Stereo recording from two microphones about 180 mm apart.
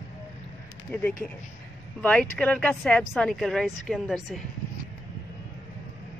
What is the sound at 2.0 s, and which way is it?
Speech, 5° left (ahead or behind).